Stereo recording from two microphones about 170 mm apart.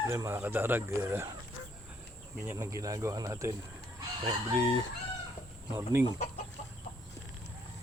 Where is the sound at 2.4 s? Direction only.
15° right (ahead or behind).